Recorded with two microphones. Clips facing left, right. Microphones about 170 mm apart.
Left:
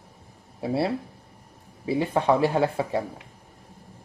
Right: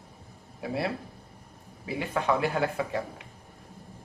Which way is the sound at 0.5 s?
30° left (ahead or behind).